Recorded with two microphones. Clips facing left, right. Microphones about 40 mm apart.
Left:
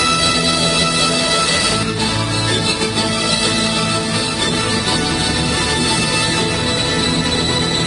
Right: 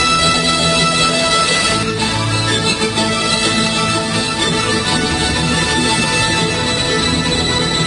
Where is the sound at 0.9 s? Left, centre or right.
Right.